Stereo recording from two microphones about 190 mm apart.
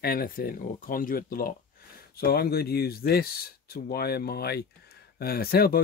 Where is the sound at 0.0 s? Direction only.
50° left (ahead or behind).